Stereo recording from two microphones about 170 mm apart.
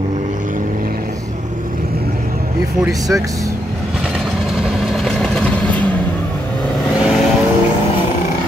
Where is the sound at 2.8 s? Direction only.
20° right (ahead or behind).